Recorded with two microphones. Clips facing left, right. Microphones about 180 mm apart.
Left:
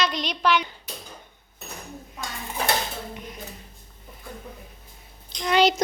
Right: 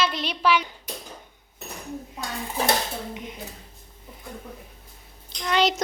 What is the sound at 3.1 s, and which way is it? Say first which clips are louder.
Dishes: right 2 dB; 20° right (ahead or behind).